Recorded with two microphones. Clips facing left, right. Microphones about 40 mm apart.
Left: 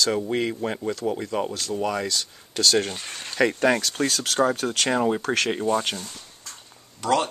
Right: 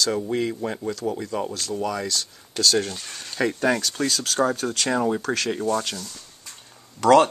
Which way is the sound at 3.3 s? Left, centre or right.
Left.